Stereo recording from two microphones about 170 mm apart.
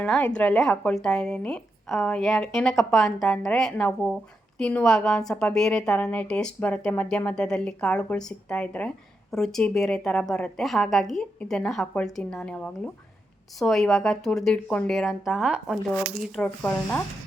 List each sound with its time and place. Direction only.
0.0 s speech: 5° left (ahead or behind)